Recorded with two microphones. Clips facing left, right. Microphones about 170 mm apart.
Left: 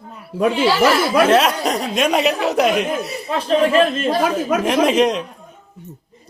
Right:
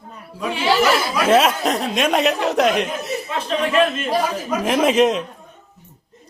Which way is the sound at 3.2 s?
30° left (ahead or behind).